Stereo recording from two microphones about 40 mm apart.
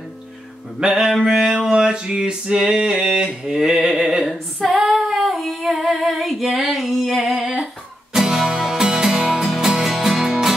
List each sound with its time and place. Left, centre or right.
0.7 s a sound: centre
3.3 s mantra: centre
3.7 s a sound: centre
4.3 s female singing: centre
8.1 s music: centre
9.6 s music: centre